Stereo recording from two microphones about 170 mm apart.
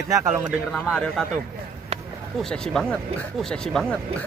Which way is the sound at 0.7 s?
Centre (ahead or behind).